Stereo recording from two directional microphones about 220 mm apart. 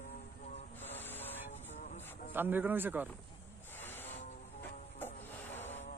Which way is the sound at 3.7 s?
10° left (ahead or behind).